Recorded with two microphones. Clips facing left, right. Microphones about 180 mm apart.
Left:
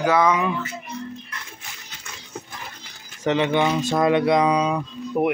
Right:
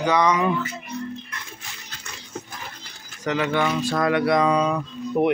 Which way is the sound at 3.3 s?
25° left (ahead or behind).